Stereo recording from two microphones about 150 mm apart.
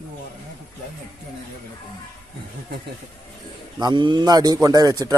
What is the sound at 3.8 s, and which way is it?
A man's voice, 30° right (ahead or behind).